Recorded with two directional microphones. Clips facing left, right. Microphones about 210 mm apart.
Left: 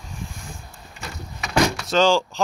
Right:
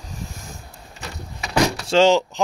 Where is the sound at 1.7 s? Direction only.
30° right (ahead or behind).